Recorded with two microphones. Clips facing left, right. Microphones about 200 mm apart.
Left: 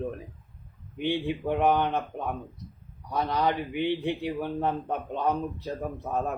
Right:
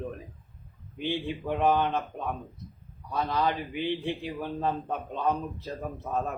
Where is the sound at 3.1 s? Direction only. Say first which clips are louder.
Left 1 dB; 15° left (ahead or behind).